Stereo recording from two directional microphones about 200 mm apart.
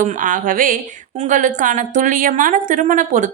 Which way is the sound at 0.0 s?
40° right (ahead or behind).